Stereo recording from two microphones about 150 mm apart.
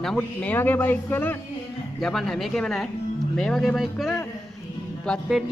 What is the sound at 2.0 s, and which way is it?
Speech, centre (ahead or behind).